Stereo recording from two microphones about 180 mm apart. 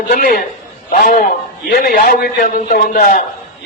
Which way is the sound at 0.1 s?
55° left (ahead or behind).